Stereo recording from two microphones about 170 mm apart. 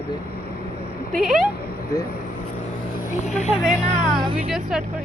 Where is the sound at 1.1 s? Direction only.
Centre (ahead or behind).